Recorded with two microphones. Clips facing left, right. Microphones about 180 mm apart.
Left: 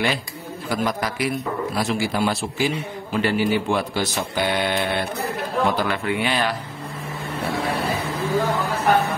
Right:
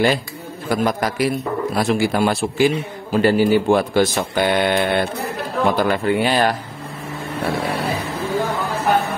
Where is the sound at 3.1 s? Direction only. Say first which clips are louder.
Right 6 dB; 40° right (ahead or behind); by 5.0 s 55° right (ahead or behind).